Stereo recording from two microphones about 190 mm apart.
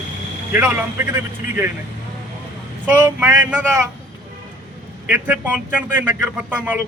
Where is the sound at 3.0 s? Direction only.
10° right (ahead or behind).